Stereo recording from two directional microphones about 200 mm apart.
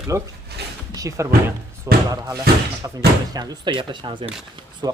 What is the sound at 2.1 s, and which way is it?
Speech, 15° right (ahead or behind).